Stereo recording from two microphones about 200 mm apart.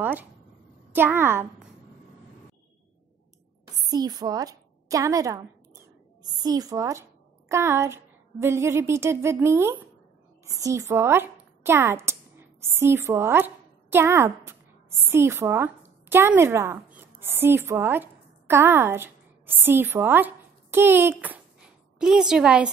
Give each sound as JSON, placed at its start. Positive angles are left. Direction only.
{"t": 0.0, "sound": "a woman's voice", "side_deg": -10}
{"t": 3.8, "sound": "a woman's voice", "side_deg": -20}